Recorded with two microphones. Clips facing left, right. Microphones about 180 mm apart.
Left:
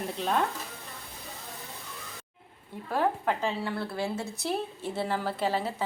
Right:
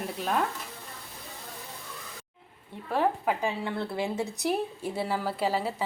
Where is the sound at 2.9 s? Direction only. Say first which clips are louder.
Right 1 dB; 5° right (ahead or behind).